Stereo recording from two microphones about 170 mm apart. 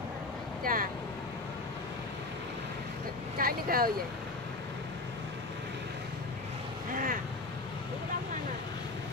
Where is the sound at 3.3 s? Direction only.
60° right (ahead or behind).